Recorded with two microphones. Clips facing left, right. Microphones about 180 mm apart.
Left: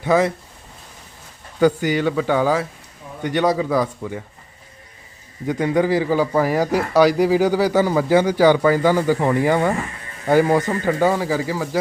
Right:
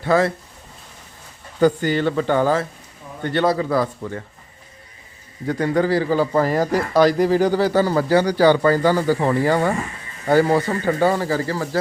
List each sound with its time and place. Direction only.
0.0 s a man's voice: 15° left (ahead or behind)
1.5 s a man's voice: 10° left (ahead or behind)
5.5 s a man's voice: 20° left (ahead or behind)
10.7 s speech: 10° right (ahead or behind)
11.1 s a man's voice: 10° left (ahead or behind)